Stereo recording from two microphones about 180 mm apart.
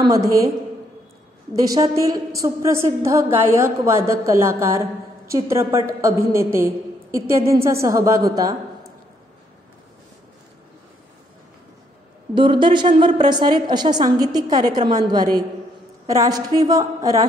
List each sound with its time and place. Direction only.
0.0 s a woman's voice: 20° right (ahead or behind)
1.5 s a woman's voice: 20° right (ahead or behind)
12.4 s a woman's voice: 30° right (ahead or behind)